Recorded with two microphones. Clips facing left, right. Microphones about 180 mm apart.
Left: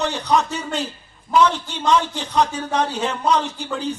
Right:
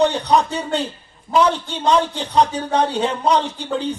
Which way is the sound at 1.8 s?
30° right (ahead or behind).